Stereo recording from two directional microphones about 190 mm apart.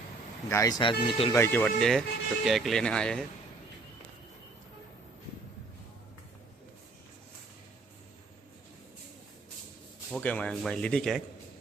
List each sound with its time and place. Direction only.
0.5 s speech: 20° left (ahead or behind)
1.4 s speech: 10° left (ahead or behind)
10.1 s speech: 5° left (ahead or behind)